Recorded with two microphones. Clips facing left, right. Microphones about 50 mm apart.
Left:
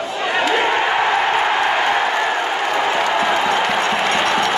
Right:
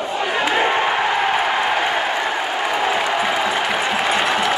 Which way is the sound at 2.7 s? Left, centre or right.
Centre.